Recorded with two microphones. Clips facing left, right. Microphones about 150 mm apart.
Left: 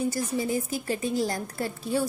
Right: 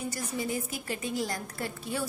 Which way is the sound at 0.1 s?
35° left (ahead or behind).